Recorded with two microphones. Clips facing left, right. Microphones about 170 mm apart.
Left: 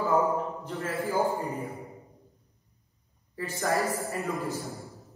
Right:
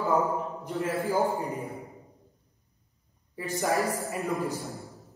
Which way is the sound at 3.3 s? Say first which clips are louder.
Right 1 dB; 15° right (ahead or behind).